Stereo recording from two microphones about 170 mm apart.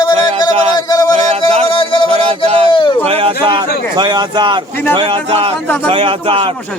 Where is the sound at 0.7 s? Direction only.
25° left (ahead or behind).